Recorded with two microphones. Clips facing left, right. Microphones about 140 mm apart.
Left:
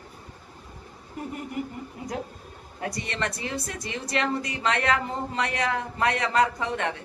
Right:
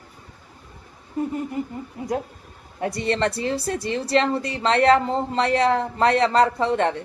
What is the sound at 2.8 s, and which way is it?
A woman's voice, 30° right (ahead or behind).